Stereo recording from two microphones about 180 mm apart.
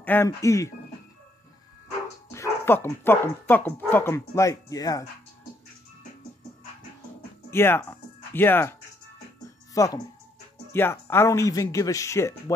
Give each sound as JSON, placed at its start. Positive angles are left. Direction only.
{"t": 0.0, "sound": "speech", "side_deg": 10}
{"t": 2.3, "sound": "speech", "side_deg": 15}
{"t": 7.5, "sound": "speech", "side_deg": 15}
{"t": 9.8, "sound": "speech", "side_deg": 20}